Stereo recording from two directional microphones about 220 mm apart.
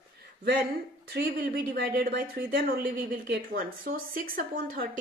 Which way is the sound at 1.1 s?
45° right (ahead or behind).